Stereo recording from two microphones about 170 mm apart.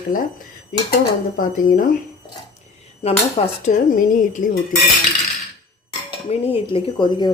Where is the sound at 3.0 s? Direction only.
35° left (ahead or behind).